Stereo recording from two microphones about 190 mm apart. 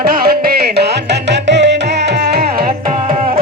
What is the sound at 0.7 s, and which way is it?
Music, 65° right (ahead or behind).